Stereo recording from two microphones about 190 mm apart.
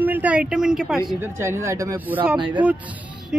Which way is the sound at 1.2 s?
15° right (ahead or behind).